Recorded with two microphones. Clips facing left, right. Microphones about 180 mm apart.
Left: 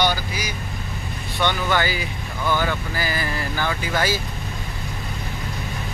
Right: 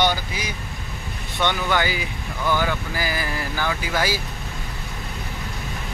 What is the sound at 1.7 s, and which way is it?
Speech, 15° right (ahead or behind).